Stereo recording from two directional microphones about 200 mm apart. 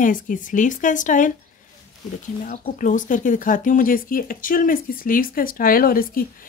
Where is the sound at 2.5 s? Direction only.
40° left (ahead or behind).